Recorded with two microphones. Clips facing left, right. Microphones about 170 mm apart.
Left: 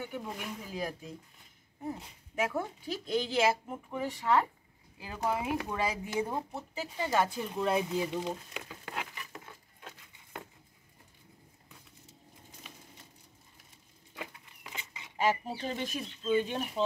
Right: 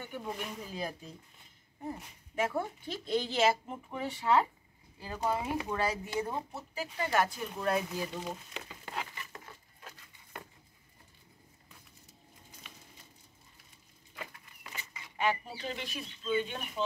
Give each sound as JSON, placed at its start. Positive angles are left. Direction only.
{"t": 0.0, "sound": "speech", "side_deg": 5}
{"t": 2.3, "sound": "speech", "side_deg": 5}
{"t": 4.9, "sound": "speech", "side_deg": 10}
{"t": 8.6, "sound": "a sound", "side_deg": 5}
{"t": 14.1, "sound": "a sound", "side_deg": 15}
{"t": 15.1, "sound": "speech", "side_deg": 40}